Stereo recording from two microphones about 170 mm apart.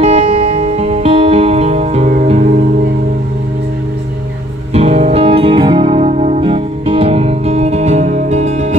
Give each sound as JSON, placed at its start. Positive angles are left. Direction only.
{"t": 0.0, "sound": "music", "side_deg": -35}
{"t": 4.7, "sound": "music", "side_deg": -40}